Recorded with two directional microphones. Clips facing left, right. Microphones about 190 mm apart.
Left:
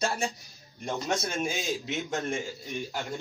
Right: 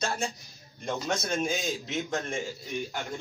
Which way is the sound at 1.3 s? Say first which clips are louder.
Right 1 dB; centre (ahead or behind).